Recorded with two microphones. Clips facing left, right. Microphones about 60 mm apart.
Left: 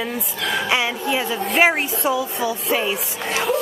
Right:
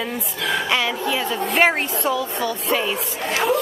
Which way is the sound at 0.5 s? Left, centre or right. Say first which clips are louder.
Even; centre.